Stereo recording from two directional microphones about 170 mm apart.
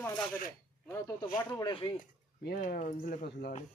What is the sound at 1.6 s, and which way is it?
Speech, 25° left (ahead or behind).